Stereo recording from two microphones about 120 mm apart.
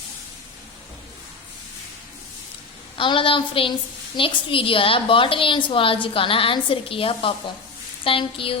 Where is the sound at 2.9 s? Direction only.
45° left (ahead or behind).